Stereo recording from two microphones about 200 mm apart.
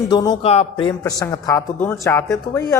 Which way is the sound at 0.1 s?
20° left (ahead or behind).